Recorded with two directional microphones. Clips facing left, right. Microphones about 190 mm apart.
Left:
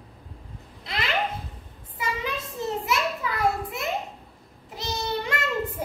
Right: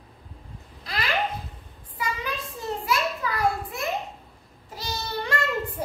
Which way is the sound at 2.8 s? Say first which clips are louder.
Even; 20° left (ahead or behind).